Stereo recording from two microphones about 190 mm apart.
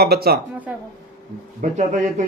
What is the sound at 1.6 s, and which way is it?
Speech, 40° right (ahead or behind).